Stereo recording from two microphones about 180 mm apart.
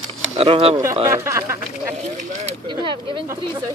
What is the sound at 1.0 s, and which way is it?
Speech, 15° right (ahead or behind).